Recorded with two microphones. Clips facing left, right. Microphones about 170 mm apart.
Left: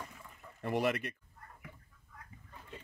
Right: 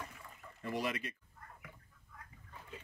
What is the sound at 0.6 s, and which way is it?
Speech, 60° left (ahead or behind).